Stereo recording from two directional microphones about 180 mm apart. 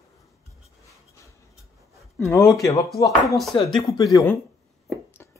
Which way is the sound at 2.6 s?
15° left (ahead or behind).